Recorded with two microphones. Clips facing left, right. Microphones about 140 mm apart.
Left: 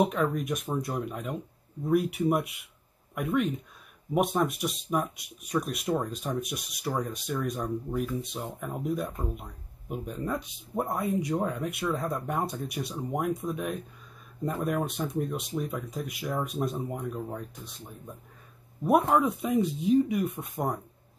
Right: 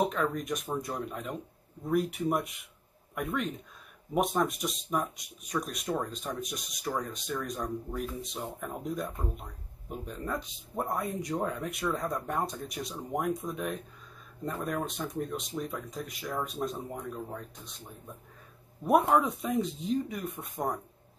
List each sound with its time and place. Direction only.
0.0 s speech: 5° left (ahead or behind)
18.9 s speech: centre (ahead or behind)